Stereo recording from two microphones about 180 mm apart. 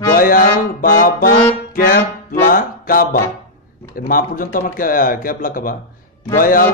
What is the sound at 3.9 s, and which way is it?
Speech, 50° left (ahead or behind).